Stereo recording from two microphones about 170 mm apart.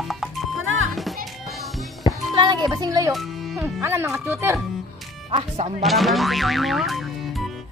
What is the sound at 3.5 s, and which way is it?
Speech, 15° right (ahead or behind).